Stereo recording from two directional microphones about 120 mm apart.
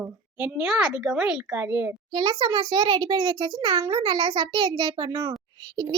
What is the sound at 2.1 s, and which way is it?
A child's voice, 35° right (ahead or behind).